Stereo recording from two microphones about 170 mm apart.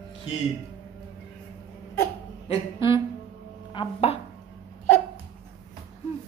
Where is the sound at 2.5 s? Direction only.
30° left (ahead or behind).